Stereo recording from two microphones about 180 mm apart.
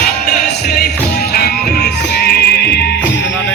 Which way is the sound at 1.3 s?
65° left (ahead or behind).